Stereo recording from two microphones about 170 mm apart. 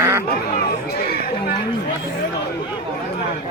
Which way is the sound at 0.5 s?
65° left (ahead or behind).